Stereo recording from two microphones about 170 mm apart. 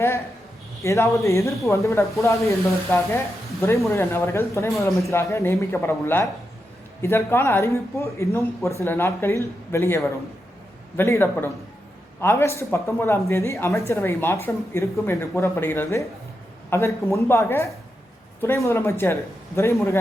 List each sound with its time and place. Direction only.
0.8 s speech: 20° left (ahead or behind)